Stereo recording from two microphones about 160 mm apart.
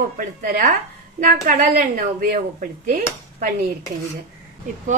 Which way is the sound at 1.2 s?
60° right (ahead or behind).